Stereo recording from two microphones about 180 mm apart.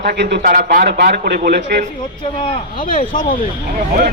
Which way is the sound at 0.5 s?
55° right (ahead or behind).